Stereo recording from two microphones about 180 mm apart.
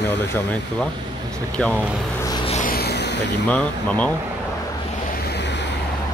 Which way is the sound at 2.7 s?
65° left (ahead or behind).